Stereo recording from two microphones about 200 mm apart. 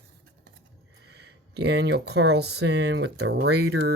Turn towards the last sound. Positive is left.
turn(degrees=-55)  # may be behind; listen again after turning